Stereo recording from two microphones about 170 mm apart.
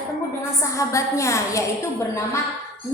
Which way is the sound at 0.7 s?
20° left (ahead or behind).